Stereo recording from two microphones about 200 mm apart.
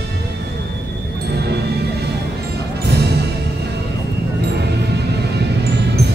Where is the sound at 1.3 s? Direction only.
55° right (ahead or behind).